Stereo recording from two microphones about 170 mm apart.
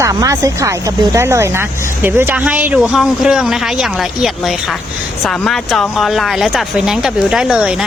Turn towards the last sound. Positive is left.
turn(degrees=-5)  # may be behind; listen again after turning